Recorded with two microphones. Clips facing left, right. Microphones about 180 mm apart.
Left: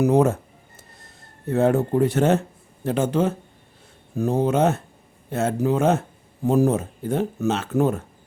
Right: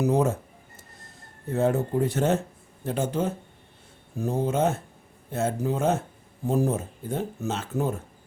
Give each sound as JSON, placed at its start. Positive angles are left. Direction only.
{"t": 0.0, "sound": "speech", "side_deg": 65}
{"t": 1.5, "sound": "speech", "side_deg": 70}